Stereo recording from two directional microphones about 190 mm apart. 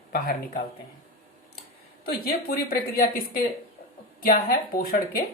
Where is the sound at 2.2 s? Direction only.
55° left (ahead or behind).